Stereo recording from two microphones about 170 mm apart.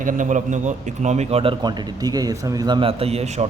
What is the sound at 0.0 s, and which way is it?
A man's voice, 50° right (ahead or behind).